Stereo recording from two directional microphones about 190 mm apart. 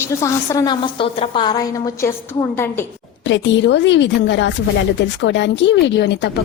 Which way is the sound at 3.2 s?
70° left (ahead or behind).